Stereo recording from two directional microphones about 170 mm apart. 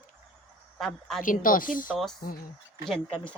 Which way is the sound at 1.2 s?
55° left (ahead or behind).